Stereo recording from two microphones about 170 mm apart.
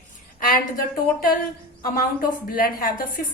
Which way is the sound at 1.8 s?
55° left (ahead or behind).